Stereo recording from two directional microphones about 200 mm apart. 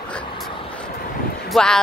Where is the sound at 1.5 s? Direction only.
5° left (ahead or behind).